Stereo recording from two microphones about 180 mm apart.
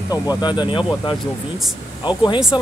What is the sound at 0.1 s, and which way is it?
Speech, 20° left (ahead or behind).